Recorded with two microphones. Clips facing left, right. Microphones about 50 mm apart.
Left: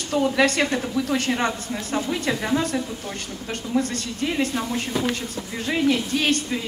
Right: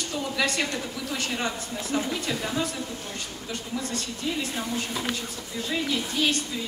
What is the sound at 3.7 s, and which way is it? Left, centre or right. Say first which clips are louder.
Speech: left 11 dB; left.